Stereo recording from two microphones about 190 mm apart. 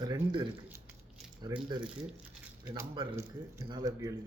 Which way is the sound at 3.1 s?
15° right (ahead or behind).